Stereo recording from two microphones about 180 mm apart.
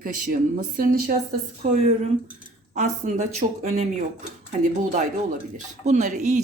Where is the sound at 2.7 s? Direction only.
45° right (ahead or behind).